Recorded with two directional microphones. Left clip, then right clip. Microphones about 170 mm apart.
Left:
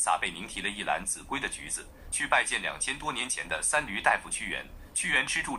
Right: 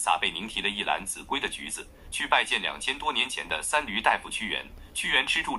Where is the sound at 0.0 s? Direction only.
30° right (ahead or behind).